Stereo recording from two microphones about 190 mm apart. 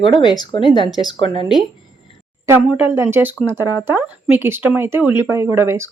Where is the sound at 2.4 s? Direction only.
10° right (ahead or behind).